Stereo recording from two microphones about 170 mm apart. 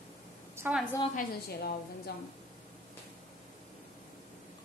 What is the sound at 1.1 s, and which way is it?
A woman's voice, 65° left (ahead or behind).